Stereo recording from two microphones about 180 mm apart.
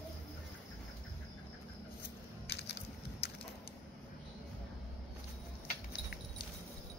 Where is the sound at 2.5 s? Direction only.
70° left (ahead or behind).